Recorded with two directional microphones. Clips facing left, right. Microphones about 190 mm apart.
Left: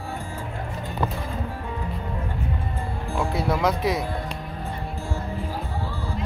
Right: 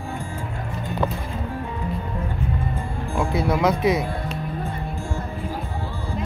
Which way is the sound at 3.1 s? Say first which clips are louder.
Right 3 dB; centre (ahead or behind).